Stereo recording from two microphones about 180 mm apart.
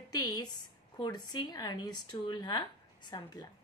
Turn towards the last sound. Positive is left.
turn(degrees=25)  # may be behind; listen again after turning